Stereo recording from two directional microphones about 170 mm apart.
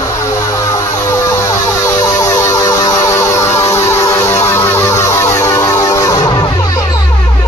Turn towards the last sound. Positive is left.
turn(degrees=20)  # may be behind; listen again after turning